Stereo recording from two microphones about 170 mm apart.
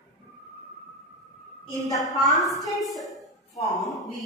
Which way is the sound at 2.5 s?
20° left (ahead or behind).